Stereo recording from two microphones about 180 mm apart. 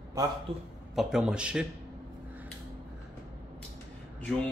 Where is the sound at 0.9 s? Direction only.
Centre (ahead or behind).